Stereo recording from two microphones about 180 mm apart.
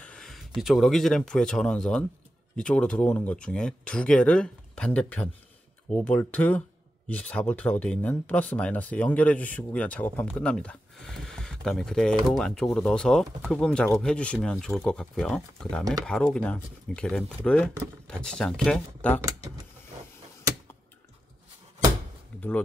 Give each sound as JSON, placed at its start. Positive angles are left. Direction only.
{"t": 0.0, "sound": "a sound", "side_deg": 5}
{"t": 0.6, "sound": "speech", "side_deg": 0}
{"t": 19.2, "sound": "speech", "side_deg": -20}